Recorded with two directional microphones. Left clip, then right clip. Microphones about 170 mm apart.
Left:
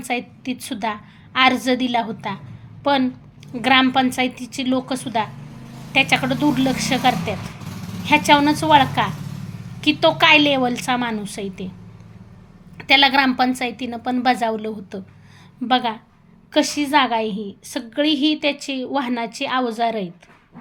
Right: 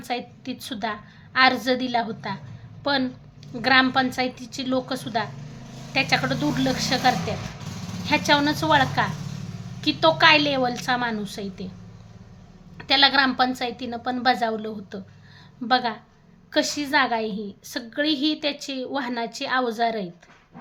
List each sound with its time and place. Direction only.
0.0 s a woman's voice: 15° left (ahead or behind)
12.7 s a woman's voice: 15° left (ahead or behind)